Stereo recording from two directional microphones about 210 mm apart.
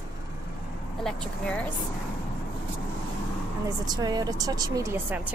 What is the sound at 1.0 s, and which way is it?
Speech, 5° left (ahead or behind).